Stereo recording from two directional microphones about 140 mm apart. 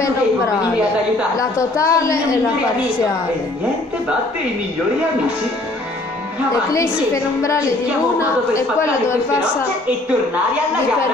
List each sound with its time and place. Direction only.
1.4 s a woman's voice: 25° left (ahead or behind)